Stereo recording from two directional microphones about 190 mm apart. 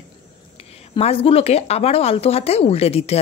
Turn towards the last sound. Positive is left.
turn(degrees=35)  # may be behind; listen again after turning